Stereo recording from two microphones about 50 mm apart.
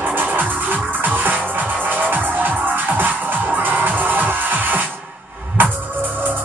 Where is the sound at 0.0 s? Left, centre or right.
Right.